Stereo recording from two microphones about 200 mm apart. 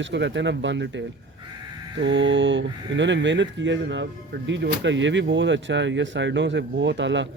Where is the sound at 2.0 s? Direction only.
65° right (ahead or behind).